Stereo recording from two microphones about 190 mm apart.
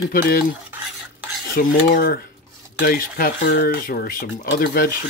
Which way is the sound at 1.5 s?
45° left (ahead or behind).